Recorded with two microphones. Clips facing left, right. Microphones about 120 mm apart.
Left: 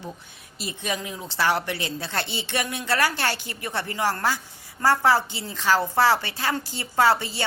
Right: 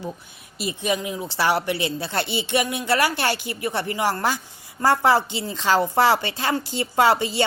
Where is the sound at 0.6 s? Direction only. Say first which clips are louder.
Right 5 dB; 10° right (ahead or behind).